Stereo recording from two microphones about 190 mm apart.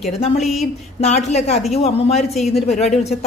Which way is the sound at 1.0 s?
35° left (ahead or behind).